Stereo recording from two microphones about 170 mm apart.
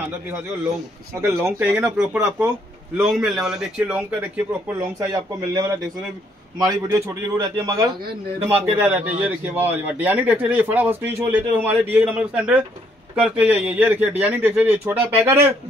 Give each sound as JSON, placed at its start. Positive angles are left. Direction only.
{"t": 1.4, "sound": "a man's voice", "side_deg": -10}
{"t": 4.7, "sound": "a man's voice", "side_deg": -20}
{"t": 8.7, "sound": "a man's voice", "side_deg": -10}